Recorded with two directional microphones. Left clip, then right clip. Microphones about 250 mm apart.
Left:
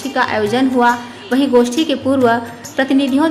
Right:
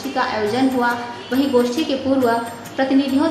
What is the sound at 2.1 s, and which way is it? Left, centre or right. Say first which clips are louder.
Speech: left 4 dB; left.